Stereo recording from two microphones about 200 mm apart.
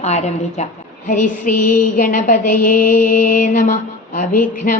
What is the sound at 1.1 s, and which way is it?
Mantra, 40° left (ahead or behind).